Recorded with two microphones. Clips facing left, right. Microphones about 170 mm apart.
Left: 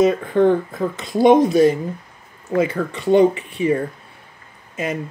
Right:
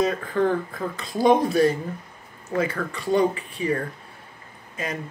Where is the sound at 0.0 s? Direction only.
20° left (ahead or behind).